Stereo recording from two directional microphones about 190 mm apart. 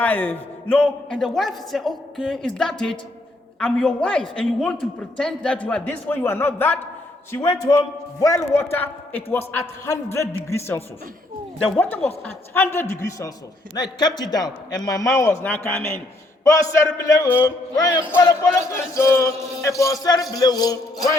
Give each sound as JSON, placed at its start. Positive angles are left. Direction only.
{"t": 0.0, "sound": "a man's voice", "side_deg": 10}